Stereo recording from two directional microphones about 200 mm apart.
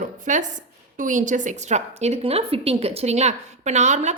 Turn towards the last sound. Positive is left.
turn(degrees=-35)  # may be behind; listen again after turning